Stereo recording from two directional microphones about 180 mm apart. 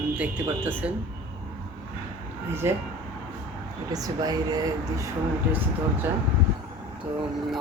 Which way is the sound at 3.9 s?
20° right (ahead or behind).